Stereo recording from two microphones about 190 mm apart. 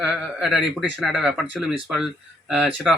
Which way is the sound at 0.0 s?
5° right (ahead or behind).